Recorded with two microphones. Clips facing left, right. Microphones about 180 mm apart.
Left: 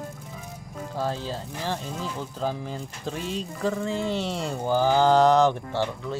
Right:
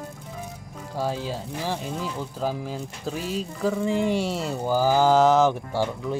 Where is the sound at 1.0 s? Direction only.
10° right (ahead or behind).